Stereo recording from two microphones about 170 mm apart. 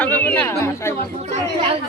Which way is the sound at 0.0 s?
10° left (ahead or behind).